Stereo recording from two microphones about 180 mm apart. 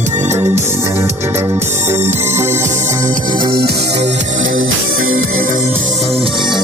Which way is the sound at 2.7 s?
40° right (ahead or behind).